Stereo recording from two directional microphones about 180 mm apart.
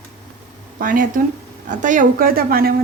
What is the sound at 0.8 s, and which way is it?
A woman's voice, 45° right (ahead or behind).